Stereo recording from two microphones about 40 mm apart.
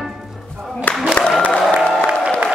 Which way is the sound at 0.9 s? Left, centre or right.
Left.